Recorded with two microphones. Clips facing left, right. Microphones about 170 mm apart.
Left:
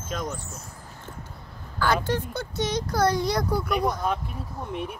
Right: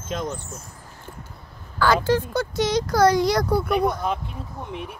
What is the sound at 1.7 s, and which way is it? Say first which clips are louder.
Speech: right 5 dB; 90° right.